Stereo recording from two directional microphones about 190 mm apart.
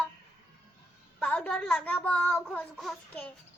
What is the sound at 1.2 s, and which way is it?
A child's voice, 5° left (ahead or behind).